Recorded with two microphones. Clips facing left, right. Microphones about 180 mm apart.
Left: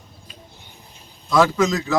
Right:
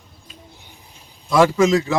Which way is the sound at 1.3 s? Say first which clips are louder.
Right 2 dB; 10° right (ahead or behind).